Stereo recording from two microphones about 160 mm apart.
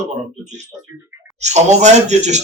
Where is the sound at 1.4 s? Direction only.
45° right (ahead or behind).